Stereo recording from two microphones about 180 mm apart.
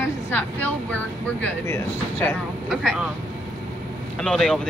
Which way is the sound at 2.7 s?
Centre (ahead or behind).